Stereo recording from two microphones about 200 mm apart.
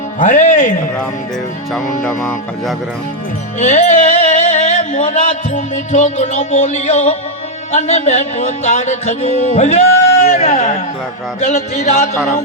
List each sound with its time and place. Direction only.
0.2 s speech: 35° left (ahead or behind)
2.0 s speech: 5° left (ahead or behind)
3.6 s music: 35° left (ahead or behind)
7.7 s speech: 35° left (ahead or behind)